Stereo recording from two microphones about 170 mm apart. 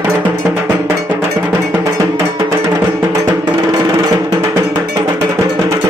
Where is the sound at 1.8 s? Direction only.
20° right (ahead or behind).